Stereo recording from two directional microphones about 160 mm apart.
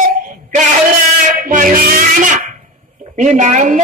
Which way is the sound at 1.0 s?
55° right (ahead or behind).